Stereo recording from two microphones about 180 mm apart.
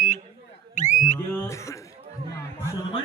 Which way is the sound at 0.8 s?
40° left (ahead or behind).